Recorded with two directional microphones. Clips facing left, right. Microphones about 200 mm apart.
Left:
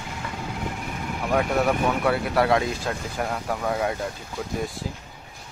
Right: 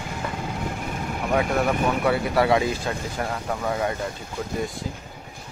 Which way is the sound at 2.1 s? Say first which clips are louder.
Right 1 dB; centre (ahead or behind).